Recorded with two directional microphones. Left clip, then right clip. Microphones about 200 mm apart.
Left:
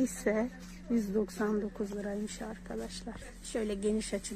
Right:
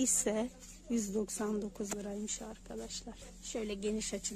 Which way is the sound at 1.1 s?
20° right (ahead or behind).